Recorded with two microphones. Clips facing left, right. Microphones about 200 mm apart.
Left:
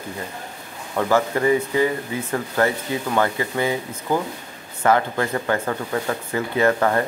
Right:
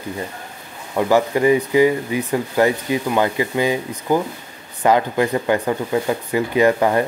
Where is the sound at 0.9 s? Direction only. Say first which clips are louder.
Right 3 dB; 15° right (ahead or behind).